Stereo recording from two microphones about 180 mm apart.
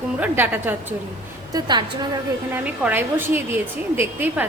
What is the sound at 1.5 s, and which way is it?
Speech, 25° right (ahead or behind).